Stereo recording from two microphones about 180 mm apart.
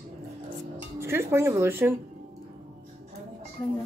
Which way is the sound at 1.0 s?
15° right (ahead or behind).